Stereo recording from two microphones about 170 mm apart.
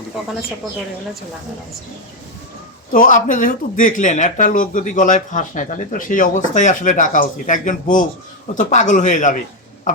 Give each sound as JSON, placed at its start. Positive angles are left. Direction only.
{"t": 2.9, "sound": "speech", "side_deg": 50}